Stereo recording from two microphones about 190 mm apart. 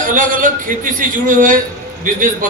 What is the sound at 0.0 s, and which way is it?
A man's voice, 45° right (ahead or behind).